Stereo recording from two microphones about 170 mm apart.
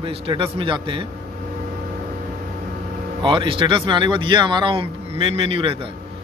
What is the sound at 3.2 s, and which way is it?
Speech, 30° right (ahead or behind).